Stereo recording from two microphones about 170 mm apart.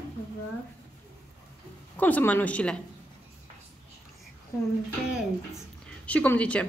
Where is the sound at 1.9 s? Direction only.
10° left (ahead or behind).